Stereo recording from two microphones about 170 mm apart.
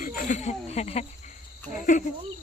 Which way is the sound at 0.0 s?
50° left (ahead or behind).